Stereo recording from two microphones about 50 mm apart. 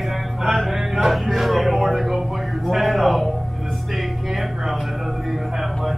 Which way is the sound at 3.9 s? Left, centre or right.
Centre.